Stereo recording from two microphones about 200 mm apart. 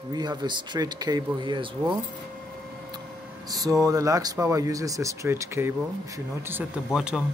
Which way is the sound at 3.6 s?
15° right (ahead or behind).